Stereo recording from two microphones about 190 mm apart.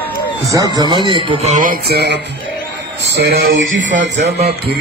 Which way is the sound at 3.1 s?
60° right (ahead or behind).